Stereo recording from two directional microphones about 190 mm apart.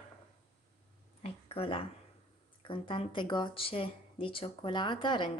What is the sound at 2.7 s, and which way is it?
Speech, 25° left (ahead or behind).